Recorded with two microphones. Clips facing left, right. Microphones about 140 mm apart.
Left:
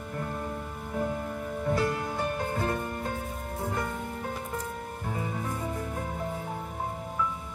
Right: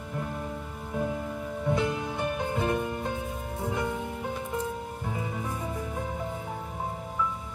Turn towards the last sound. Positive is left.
turn(degrees=0)  # may be behind; listen again after turning